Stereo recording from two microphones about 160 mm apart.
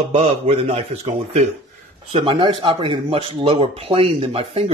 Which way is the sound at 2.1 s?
35° right (ahead or behind).